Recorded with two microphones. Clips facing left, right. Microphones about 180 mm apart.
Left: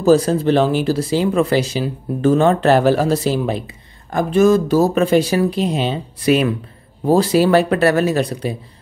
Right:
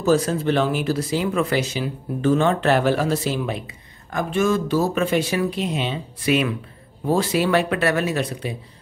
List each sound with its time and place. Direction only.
0.0 s speech: 35° left (ahead or behind)